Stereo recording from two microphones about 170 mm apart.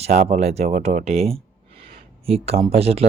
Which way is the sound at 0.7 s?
50° right (ahead or behind).